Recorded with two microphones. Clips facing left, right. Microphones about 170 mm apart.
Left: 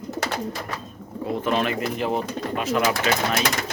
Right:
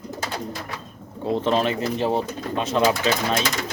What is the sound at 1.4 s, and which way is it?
A man's voice, 30° right (ahead or behind).